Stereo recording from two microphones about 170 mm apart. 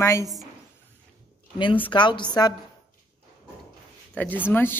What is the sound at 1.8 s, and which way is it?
Speech, 25° left (ahead or behind).